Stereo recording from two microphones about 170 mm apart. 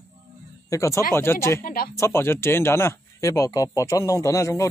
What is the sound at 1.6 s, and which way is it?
Speech, 60° left (ahead or behind).